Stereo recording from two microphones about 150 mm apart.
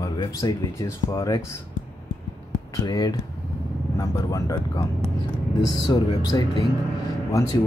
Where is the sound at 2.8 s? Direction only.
25° left (ahead or behind).